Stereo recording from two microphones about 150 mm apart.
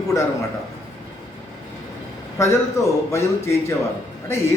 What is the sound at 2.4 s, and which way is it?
A man's voice, 20° left (ahead or behind).